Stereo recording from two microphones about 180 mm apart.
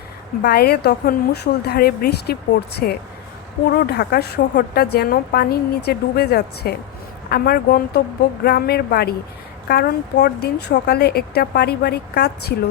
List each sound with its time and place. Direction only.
0.4 s a woman's voice: 60° left (ahead or behind)